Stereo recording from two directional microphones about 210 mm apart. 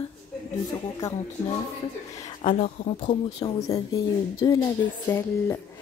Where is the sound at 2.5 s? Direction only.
30° left (ahead or behind).